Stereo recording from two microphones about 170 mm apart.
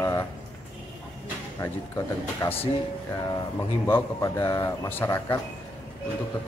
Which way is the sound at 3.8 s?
15° left (ahead or behind).